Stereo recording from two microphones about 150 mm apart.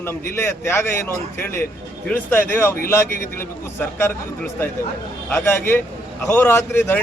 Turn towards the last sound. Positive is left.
turn(degrees=15)  # may be behind; listen again after turning